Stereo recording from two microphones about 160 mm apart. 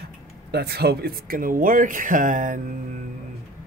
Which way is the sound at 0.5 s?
80° right.